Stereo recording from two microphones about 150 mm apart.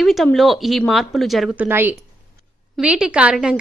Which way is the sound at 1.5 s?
15° right (ahead or behind).